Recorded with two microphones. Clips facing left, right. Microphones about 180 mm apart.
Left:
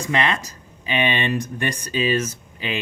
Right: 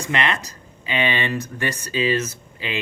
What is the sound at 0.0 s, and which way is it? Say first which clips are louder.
Speech: left 1 dB; 10° left (ahead or behind).